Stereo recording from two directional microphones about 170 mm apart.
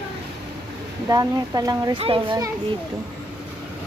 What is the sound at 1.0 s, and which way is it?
Speech, 20° right (ahead or behind).